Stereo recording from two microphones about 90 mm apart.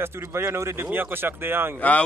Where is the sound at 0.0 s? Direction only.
25° right (ahead or behind).